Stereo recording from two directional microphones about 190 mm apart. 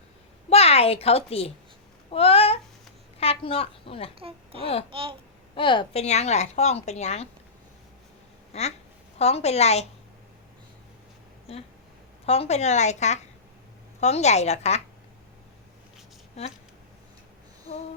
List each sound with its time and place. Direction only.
0.5 s a woman's voice: 30° left (ahead or behind)
4.2 s a child's voice: 30° right (ahead or behind)
4.6 s a woman's voice: 30° left (ahead or behind)
4.9 s speech: 30° right (ahead or behind)
5.5 s a woman's voice: 25° left (ahead or behind)
8.5 s a woman's voice: 35° left (ahead or behind)
11.5 s a woman's voice: 30° left (ahead or behind)